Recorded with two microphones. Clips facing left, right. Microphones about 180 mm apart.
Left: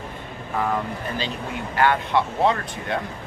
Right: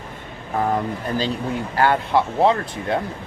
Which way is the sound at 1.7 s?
35° right (ahead or behind).